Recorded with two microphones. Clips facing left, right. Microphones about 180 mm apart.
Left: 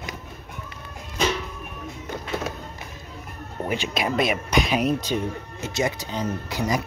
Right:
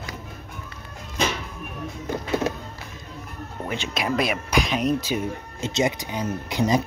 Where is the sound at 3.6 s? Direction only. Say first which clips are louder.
Left 3 dB; 10° left (ahead or behind).